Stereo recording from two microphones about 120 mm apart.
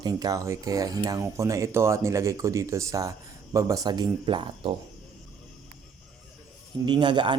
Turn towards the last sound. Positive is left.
turn(degrees=-40)  # may be behind; listen again after turning